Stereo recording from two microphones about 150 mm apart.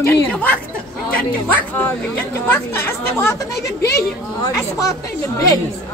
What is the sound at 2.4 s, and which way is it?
Speech, 15° left (ahead or behind).